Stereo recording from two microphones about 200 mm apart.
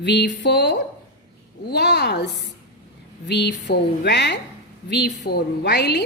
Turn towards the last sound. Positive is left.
turn(degrees=55)  # may be behind; listen again after turning